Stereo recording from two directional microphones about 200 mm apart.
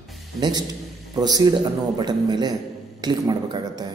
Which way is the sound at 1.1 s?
20° right (ahead or behind).